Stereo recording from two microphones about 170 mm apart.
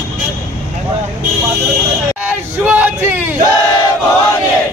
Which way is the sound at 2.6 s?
10° right (ahead or behind).